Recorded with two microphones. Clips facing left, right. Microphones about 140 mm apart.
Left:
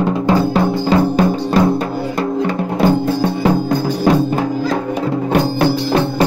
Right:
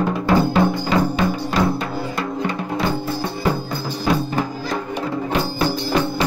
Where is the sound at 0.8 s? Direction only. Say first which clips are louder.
Left 5 dB; 40° left (ahead or behind).